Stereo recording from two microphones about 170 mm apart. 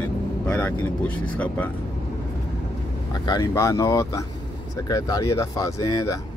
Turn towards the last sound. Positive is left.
turn(degrees=20)  # may be behind; listen again after turning